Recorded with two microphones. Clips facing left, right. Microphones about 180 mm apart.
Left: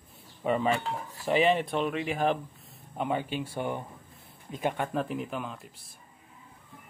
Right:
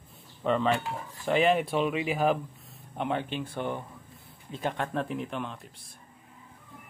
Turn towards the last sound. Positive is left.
turn(degrees=5)  # may be behind; listen again after turning